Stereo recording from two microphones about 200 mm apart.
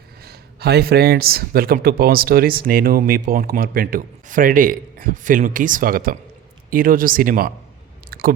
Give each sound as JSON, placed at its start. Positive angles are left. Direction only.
{"t": 0.2, "sound": "speech", "side_deg": -50}
{"t": 8.1, "sound": "chewing", "side_deg": -50}